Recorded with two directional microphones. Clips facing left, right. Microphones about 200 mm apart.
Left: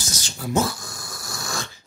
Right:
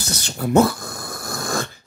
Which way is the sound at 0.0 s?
60° right (ahead or behind).